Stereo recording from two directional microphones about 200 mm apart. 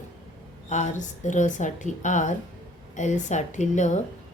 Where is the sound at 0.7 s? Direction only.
35° left (ahead or behind).